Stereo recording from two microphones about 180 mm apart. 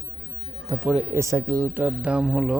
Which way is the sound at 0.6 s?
15° right (ahead or behind).